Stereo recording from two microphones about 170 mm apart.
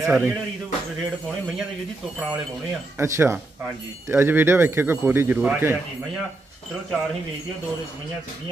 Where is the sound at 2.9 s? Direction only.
15° right (ahead or behind).